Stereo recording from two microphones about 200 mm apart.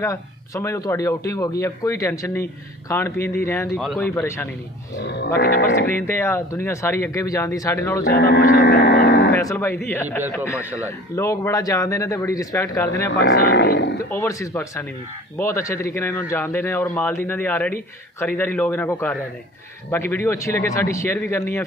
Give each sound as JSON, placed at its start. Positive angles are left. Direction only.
{"t": 0.0, "sound": "speech", "side_deg": 15}
{"t": 4.9, "sound": "speech", "side_deg": 60}
{"t": 5.9, "sound": "speech", "side_deg": 10}
{"t": 8.0, "sound": "speech", "side_deg": 60}
{"t": 9.3, "sound": "speech", "side_deg": 15}
{"t": 13.1, "sound": "speech", "side_deg": 60}
{"t": 14.1, "sound": "speech", "side_deg": 15}